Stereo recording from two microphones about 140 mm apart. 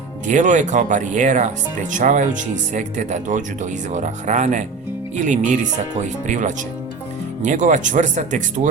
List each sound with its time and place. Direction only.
0.3 s speech: 60° right (ahead or behind)